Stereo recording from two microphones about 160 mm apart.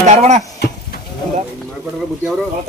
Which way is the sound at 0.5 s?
90° left.